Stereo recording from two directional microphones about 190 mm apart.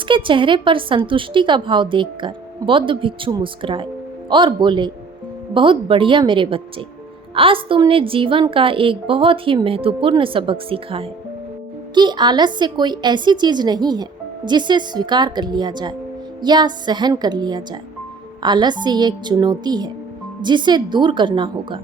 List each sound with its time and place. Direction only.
0.1 s a woman's voice: 25° right (ahead or behind)